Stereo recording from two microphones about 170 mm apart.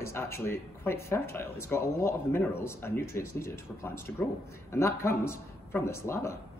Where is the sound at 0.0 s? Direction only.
15° left (ahead or behind).